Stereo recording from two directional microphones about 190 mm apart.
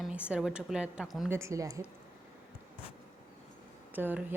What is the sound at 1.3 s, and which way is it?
Speech, 15° right (ahead or behind).